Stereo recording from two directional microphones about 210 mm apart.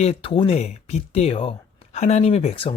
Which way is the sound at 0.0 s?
25° left (ahead or behind).